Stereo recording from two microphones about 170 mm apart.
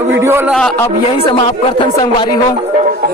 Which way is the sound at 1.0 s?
30° left (ahead or behind).